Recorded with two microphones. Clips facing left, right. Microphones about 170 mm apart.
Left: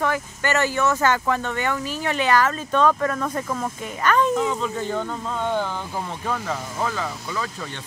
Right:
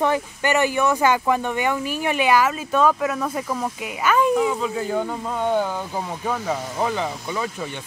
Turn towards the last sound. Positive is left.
turn(degrees=-20)  # may be behind; listen again after turning